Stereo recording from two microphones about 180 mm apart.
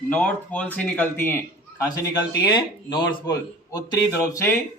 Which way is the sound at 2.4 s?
25° left (ahead or behind).